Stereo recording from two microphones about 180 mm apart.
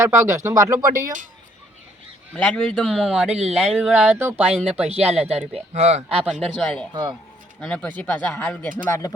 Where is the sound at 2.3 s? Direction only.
5° left (ahead or behind).